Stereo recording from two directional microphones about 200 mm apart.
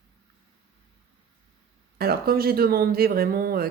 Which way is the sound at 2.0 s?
50° right (ahead or behind).